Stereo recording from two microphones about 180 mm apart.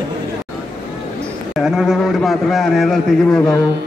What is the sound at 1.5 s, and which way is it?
A man's voice, centre (ahead or behind).